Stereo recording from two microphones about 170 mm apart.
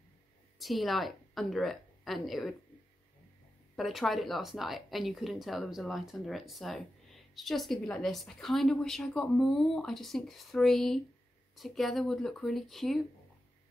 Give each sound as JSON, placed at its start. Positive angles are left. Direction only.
{"t": 0.6, "sound": "a woman's voice", "side_deg": 0}
{"t": 3.7, "sound": "a woman's voice", "side_deg": 0}